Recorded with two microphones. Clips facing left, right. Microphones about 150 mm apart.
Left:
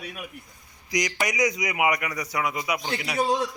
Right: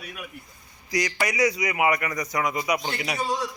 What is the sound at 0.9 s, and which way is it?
A man's voice, 15° left (ahead or behind).